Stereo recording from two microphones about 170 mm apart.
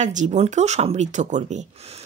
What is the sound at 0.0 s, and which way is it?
Speech, 45° right (ahead or behind).